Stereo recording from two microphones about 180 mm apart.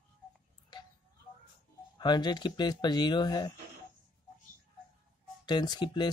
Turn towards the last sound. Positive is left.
turn(degrees=25)  # may be behind; listen again after turning